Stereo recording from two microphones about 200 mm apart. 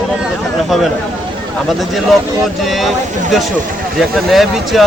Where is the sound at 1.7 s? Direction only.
Centre (ahead or behind).